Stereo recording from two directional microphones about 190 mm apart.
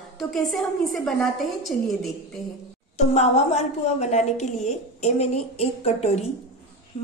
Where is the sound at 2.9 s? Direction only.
35° left (ahead or behind).